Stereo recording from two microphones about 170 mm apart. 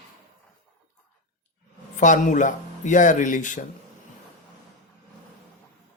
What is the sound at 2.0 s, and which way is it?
Speech, 50° left (ahead or behind).